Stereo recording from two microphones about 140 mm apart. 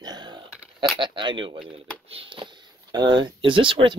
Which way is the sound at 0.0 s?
30° right (ahead or behind).